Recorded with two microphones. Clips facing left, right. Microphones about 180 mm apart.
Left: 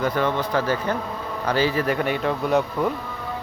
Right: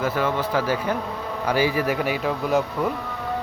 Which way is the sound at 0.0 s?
5° right (ahead or behind).